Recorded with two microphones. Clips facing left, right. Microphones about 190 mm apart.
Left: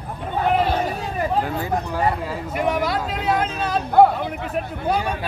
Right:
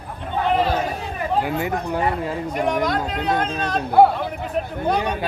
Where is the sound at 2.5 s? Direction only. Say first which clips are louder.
Even; 5° left (ahead or behind).